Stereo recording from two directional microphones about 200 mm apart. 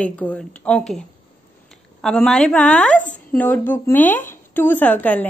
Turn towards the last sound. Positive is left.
turn(degrees=10)  # may be behind; listen again after turning